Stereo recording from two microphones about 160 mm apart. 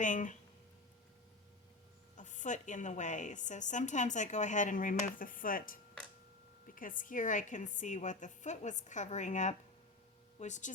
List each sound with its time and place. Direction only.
0.0 s a woman's voice: 50° left (ahead or behind)
2.1 s a woman's voice: 50° left (ahead or behind)